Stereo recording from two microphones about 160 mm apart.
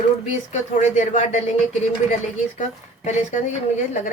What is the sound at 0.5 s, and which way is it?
Speech, 45° left (ahead or behind).